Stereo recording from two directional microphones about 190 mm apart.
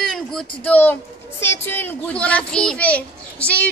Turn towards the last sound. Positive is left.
turn(degrees=5)  # may be behind; listen again after turning